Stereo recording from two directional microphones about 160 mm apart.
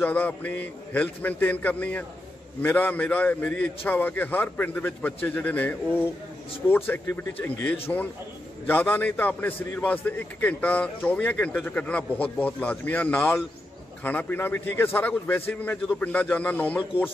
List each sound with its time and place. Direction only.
0.0 s a man's voice: 10° left (ahead or behind)